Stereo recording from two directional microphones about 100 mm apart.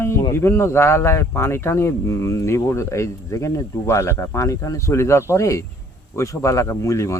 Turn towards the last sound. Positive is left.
turn(degrees=30)  # may be behind; listen again after turning